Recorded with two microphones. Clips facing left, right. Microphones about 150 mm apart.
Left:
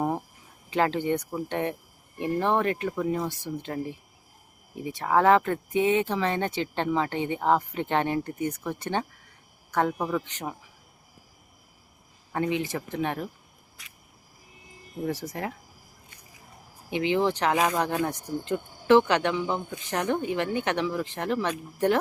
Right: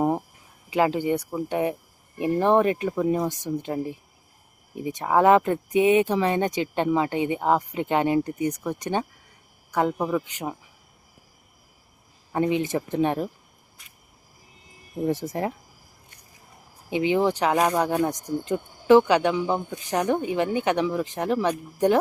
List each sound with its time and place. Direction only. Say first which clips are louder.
0.7 s speech: right 3 dB; 10° right (ahead or behind)
12.3 s speech: right 4 dB; 20° right (ahead or behind)
13.8 s cricket: left 4 dB; 90° left
15.0 s speech: right 5 dB; 25° right (ahead or behind)
16.9 s speech: right 3 dB; 15° right (ahead or behind)